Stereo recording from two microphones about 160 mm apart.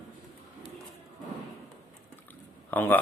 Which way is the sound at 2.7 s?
10° left (ahead or behind).